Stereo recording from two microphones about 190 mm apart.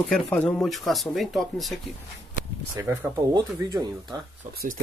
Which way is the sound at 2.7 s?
15° right (ahead or behind).